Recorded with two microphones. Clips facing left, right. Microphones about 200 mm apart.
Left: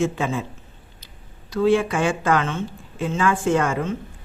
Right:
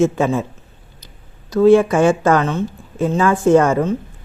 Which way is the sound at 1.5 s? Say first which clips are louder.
Right 8 dB; 45° right (ahead or behind).